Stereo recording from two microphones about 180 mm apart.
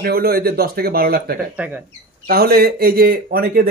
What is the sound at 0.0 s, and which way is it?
Speech, 60° right (ahead or behind).